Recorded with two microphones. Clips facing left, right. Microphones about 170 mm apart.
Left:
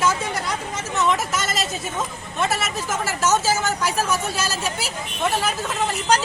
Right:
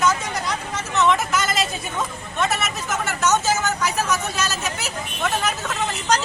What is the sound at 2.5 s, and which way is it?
Speech, 30° left (ahead or behind).